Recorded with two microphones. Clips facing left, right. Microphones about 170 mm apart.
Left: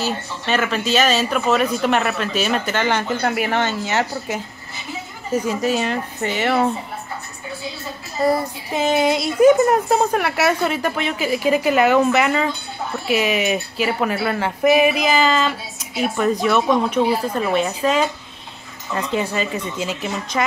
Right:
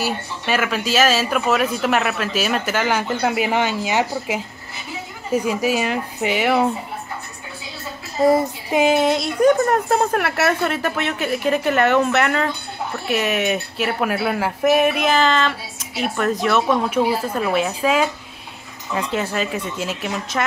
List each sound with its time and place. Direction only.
0.0 s speech: 5° right (ahead or behind)
8.2 s child singing: 20° right (ahead or behind)
8.8 s speech: centre (ahead or behind)